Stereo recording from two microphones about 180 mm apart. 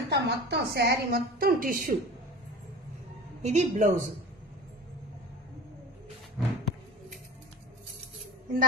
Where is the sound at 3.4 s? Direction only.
40° right (ahead or behind).